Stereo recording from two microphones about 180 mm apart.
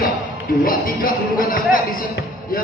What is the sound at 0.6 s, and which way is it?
A man's voice, 55° left (ahead or behind).